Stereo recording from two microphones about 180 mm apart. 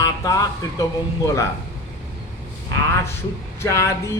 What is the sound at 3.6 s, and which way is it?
Speech, 15° left (ahead or behind).